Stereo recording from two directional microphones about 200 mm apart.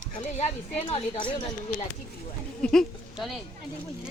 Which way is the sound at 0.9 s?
30° left (ahead or behind).